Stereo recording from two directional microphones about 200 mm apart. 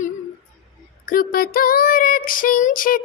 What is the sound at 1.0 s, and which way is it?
Female singing, 45° left (ahead or behind).